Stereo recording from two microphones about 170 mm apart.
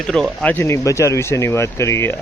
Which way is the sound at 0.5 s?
15° left (ahead or behind).